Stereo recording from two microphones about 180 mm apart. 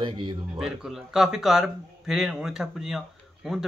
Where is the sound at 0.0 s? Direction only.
25° right (ahead or behind).